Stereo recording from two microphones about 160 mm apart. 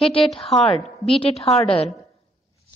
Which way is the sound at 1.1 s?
35° left (ahead or behind).